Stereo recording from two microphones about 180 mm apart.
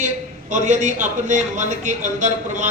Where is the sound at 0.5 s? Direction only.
45° right (ahead or behind).